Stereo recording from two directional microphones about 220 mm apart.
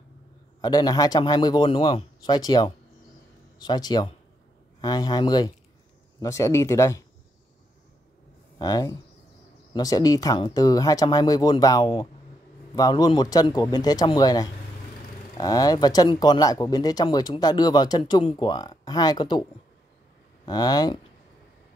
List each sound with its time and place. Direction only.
0.6 s a man's voice: 20° left (ahead or behind)
8.5 s speech: 15° left (ahead or behind)
20.4 s speech: 15° left (ahead or behind)